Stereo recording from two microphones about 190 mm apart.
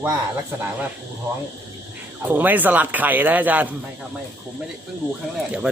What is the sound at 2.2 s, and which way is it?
Speech, 10° right (ahead or behind).